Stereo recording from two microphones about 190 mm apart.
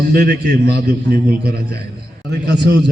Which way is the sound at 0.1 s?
55° right (ahead or behind).